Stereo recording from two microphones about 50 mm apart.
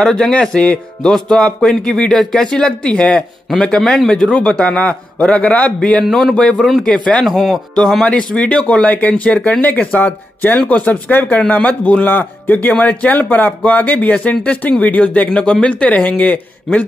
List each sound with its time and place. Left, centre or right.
0.0 s speech: centre
6.0 s speech: centre
6.3 s speech: left
7.2 s speech: centre
8.4 s speech: left
10.6 s speech: left
11.1 s speech: left
15.3 s speech: centre
15.7 s speech: left